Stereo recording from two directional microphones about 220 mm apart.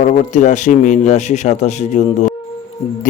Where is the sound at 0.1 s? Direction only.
35° left (ahead or behind).